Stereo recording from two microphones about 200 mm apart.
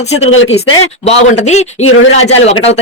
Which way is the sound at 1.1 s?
35° left (ahead or behind).